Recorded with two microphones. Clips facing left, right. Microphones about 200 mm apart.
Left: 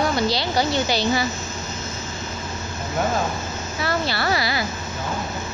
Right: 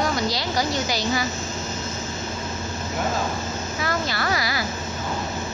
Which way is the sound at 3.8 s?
30° left (ahead or behind).